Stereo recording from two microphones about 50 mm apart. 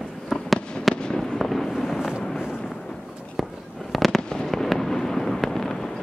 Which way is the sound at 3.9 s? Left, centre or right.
Centre.